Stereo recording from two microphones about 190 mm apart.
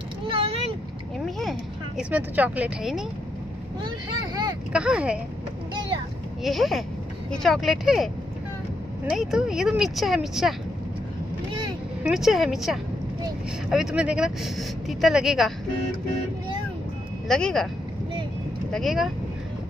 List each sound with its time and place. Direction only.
0.3 s vehicle: 30° right (ahead or behind)
1.2 s a sound: centre (ahead or behind)
4.7 s speech: 5° right (ahead or behind)
6.4 s speech: centre (ahead or behind)
9.1 s speech: centre (ahead or behind)
12.0 s speech: centre (ahead or behind)
17.3 s speech: 5° left (ahead or behind)
18.7 s speech: centre (ahead or behind)